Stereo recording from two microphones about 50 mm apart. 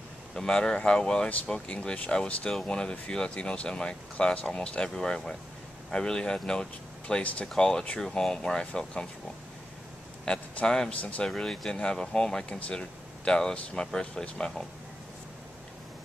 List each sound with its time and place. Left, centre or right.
0.3 s speech: centre
10.2 s speech: centre
11.0 s speech: left
11.2 s speech: centre
12.4 s speech: left
12.7 s a sound: centre
13.4 s speech: centre